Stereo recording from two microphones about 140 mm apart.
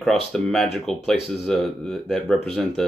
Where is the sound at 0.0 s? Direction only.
Centre (ahead or behind).